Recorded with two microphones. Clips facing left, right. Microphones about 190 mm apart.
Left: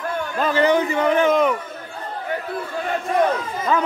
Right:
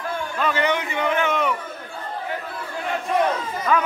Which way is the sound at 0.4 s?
35° left (ahead or behind).